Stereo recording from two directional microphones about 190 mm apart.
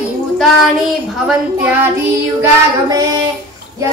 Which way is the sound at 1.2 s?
10° right (ahead or behind).